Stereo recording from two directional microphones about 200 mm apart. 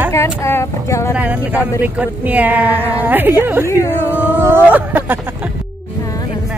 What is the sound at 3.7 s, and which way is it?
Speech, 15° left (ahead or behind).